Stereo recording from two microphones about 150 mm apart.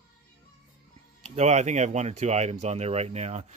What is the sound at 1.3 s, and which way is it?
Speech, 50° right (ahead or behind).